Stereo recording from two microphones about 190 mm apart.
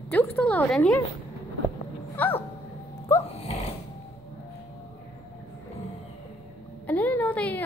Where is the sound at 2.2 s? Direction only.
10° left (ahead or behind).